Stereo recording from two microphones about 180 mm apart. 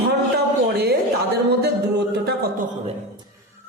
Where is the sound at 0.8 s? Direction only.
60° right (ahead or behind).